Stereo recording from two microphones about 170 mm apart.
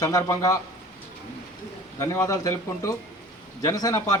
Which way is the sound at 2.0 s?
15° left (ahead or behind).